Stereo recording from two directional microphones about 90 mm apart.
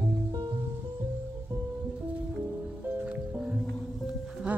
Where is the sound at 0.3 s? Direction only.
50° right (ahead or behind).